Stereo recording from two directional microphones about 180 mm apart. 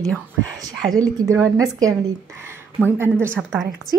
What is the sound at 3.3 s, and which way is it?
Speech, centre (ahead or behind).